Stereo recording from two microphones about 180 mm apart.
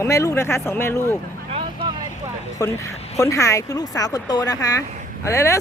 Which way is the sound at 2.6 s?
20° left (ahead or behind).